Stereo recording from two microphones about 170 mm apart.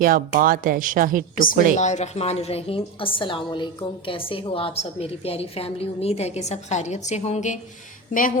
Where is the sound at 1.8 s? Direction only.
45° left (ahead or behind).